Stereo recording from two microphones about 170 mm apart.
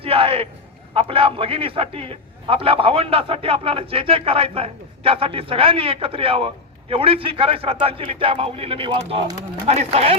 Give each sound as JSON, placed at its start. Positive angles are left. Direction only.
{"t": 0.0, "sound": "a man's voice", "side_deg": -35}